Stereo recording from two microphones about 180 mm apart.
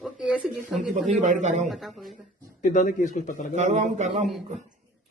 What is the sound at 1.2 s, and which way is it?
Speech, 40° right (ahead or behind).